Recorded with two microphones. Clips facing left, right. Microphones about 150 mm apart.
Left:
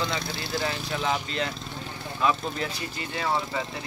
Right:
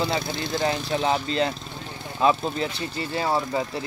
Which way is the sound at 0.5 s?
35° right (ahead or behind).